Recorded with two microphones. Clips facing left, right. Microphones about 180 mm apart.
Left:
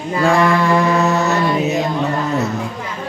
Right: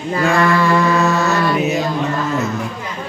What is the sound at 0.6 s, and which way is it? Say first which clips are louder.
Mantra: even; 15° left (ahead or behind).